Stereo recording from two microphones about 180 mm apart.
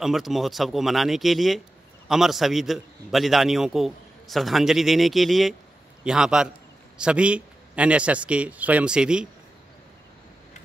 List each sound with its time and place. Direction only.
0.0 s a man's voice: centre (ahead or behind)